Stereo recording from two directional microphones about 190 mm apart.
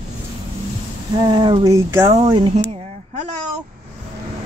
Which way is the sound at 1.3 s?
20° right (ahead or behind).